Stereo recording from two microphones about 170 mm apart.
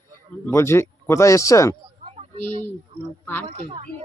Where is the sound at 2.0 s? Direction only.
35° right (ahead or behind).